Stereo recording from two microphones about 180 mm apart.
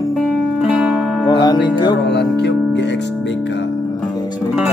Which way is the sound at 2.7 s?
75° left (ahead or behind).